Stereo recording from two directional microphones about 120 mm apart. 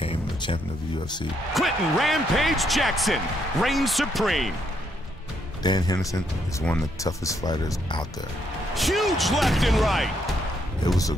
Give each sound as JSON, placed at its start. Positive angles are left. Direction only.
{"t": 0.0, "sound": "a sound", "side_deg": 50}
{"t": 1.5, "sound": "speech", "side_deg": 0}
{"t": 5.6, "sound": "speech", "side_deg": 35}
{"t": 8.7, "sound": "speech", "side_deg": 0}